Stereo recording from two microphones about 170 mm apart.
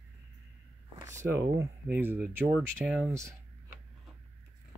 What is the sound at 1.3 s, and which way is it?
Speech, 15° right (ahead or behind).